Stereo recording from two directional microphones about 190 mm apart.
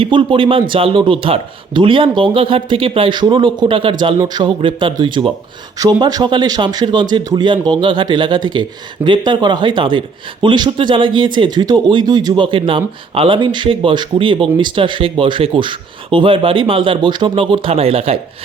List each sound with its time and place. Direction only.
0.0 s speech: 25° right (ahead or behind)